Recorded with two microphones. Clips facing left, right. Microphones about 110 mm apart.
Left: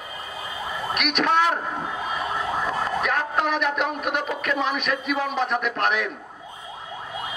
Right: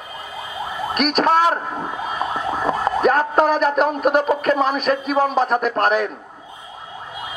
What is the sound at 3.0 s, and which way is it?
A woman's voice, 40° right (ahead or behind).